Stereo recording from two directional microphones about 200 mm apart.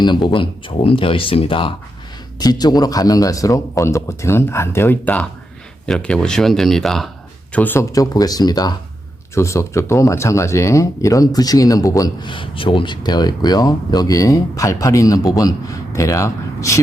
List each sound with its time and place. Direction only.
0.0 s speech: 25° left (ahead or behind)